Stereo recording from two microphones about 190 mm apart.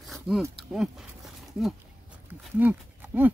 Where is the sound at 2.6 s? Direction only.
10° right (ahead or behind).